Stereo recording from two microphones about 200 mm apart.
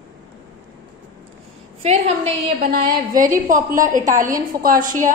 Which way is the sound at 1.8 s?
35° right (ahead or behind).